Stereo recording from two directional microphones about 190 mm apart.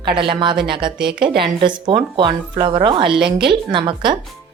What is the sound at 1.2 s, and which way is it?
A woman's voice, 25° right (ahead or behind).